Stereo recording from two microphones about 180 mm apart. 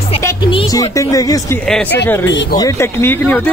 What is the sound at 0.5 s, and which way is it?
Speech, 25° left (ahead or behind).